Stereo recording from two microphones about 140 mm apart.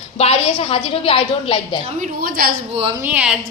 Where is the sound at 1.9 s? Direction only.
80° right.